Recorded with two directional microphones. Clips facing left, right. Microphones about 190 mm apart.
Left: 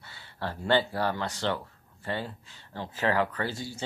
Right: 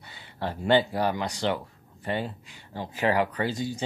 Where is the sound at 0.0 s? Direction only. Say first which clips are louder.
Right 3 dB; 15° right (ahead or behind).